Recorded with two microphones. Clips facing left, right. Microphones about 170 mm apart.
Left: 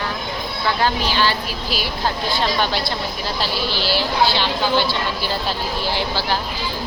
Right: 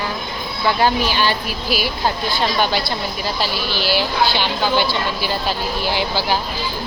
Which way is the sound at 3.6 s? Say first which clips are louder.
Right 1 dB; 30° left (ahead or behind).